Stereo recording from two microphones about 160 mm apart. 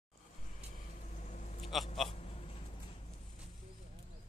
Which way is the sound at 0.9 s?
50° left (ahead or behind).